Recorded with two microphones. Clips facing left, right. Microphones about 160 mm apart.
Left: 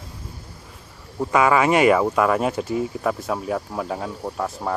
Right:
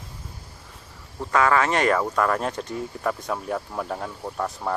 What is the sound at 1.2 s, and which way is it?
Speech, 10° left (ahead or behind).